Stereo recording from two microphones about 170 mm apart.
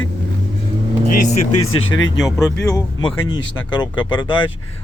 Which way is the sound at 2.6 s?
25° left (ahead or behind).